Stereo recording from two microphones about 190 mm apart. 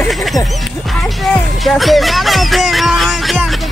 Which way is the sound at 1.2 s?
Centre (ahead or behind).